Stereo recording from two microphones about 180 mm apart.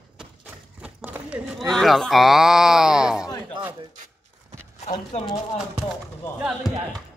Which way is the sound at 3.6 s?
25° right (ahead or behind).